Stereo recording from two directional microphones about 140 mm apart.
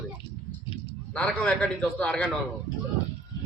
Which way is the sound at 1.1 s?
5° left (ahead or behind).